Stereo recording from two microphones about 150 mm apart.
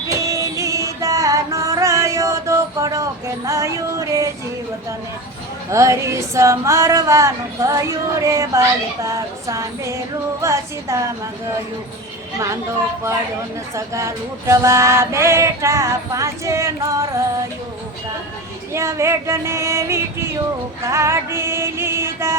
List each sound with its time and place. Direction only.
0.3 s music: 20° right (ahead or behind)
5.7 s speech: 20° right (ahead or behind)
13.7 s speech: 20° right (ahead or behind)
18.7 s speech: 20° right (ahead or behind)
20.8 s mantra: 20° right (ahead or behind)